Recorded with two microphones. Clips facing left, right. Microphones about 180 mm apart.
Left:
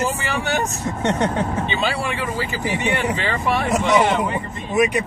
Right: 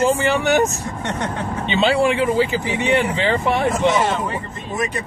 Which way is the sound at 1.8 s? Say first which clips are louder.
Right 7 dB; 20° right (ahead or behind).